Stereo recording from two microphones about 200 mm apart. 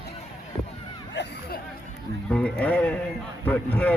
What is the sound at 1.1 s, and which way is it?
Hubbub, 55° left (ahead or behind).